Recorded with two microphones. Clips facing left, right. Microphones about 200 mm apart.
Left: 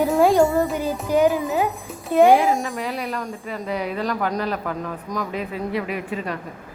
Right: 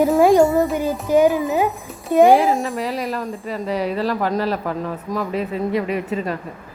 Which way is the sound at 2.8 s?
35° right (ahead or behind).